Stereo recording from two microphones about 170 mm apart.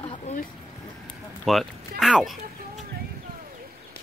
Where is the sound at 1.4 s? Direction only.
Centre (ahead or behind).